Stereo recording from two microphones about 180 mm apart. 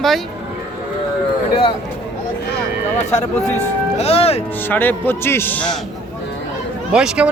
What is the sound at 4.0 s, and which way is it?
Speech, 35° left (ahead or behind).